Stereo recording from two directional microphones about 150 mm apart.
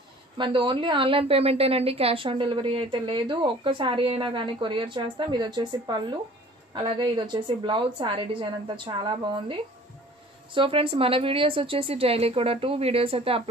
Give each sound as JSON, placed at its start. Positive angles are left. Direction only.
{"t": 0.4, "sound": "a woman's voice", "side_deg": -35}